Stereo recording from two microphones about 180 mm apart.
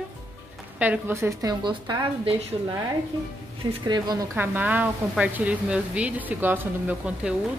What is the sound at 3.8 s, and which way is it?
Speech, 25° right (ahead or behind).